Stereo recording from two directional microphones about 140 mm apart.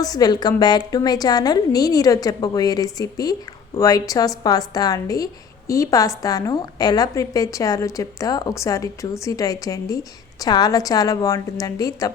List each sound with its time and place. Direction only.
0.0 s a woman's voice: 25° left (ahead or behind)